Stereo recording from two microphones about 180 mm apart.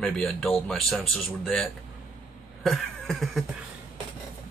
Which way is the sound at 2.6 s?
Centre (ahead or behind).